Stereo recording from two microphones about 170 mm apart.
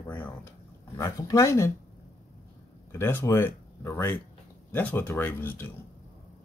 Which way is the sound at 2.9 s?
15° left (ahead or behind).